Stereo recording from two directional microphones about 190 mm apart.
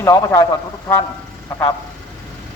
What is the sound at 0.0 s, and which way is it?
Speech, 15° left (ahead or behind).